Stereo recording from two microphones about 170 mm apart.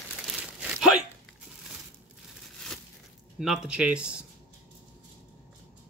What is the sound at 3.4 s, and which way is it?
Speech, 5° right (ahead or behind).